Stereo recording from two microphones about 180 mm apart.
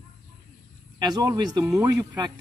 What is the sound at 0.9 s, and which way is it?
Speech, 20° right (ahead or behind).